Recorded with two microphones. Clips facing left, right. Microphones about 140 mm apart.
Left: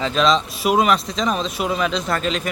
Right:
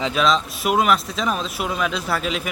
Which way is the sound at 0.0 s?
5° right (ahead or behind).